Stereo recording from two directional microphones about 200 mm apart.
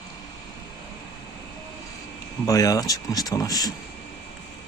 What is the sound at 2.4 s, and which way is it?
Speech, 15° left (ahead or behind).